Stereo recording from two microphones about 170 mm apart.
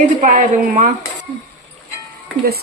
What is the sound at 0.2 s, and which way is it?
Speech, 50° right (ahead or behind).